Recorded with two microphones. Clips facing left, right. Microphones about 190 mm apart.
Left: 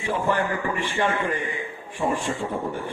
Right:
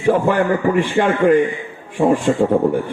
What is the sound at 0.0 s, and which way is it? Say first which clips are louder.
A man's voice: right 9 dB; 55° right (ahead or behind).